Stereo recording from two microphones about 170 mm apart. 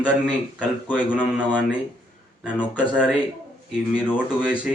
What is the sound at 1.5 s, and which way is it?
Speech, 10° left (ahead or behind).